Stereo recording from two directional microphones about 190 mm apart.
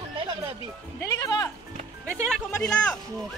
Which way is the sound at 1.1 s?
15° left (ahead or behind).